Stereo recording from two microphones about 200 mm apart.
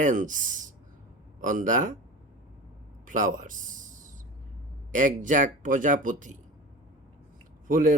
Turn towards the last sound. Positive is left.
turn(degrees=-40)  # may be behind; listen again after turning